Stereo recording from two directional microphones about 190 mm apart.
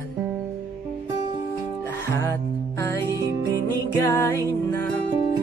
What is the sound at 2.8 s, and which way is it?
Music, 15° left (ahead or behind).